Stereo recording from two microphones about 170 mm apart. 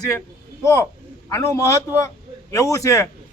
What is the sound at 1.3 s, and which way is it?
Speech, 15° left (ahead or behind).